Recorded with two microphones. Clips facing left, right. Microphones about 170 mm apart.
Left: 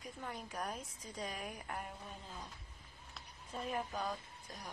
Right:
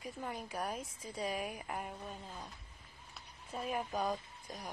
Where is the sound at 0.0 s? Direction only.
5° right (ahead or behind).